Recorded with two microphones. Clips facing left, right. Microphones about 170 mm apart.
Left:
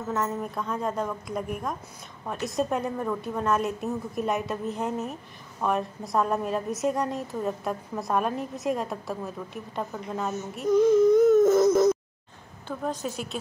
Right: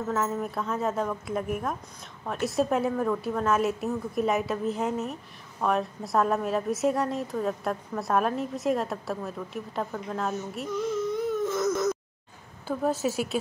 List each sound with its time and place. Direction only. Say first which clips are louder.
0.1 s a woman's voice: left 1 dB; 5° right (ahead or behind)
11.1 s a sound: left 10 dB; 45° left (ahead or behind)
12.6 s a woman's voice: right 4 dB; 5° right (ahead or behind)